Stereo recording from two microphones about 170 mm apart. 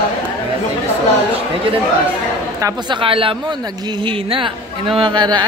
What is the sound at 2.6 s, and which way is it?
Speech, 30° right (ahead or behind).